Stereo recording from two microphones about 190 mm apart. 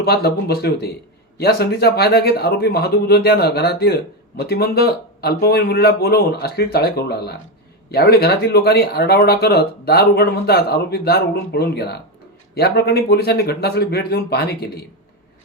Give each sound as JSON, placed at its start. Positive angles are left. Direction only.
{"t": 0.0, "sound": "speech", "side_deg": 55}